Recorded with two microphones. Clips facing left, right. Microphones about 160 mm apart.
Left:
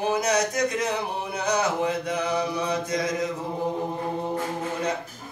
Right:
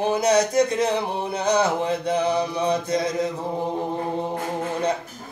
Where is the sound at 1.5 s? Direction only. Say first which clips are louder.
Right 3 dB; 30° right (ahead or behind).